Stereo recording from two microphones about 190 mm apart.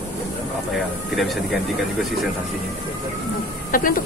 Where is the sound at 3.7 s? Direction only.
45° left (ahead or behind).